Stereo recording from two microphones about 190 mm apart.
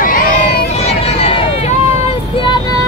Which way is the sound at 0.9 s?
30° left (ahead or behind).